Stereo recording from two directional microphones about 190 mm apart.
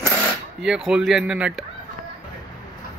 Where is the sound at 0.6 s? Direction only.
Centre (ahead or behind).